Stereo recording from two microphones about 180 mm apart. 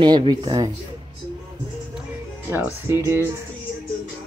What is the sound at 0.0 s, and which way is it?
Speech, 25° right (ahead or behind).